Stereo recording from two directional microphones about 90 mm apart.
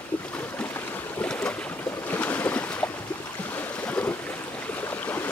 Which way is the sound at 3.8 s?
15° left (ahead or behind).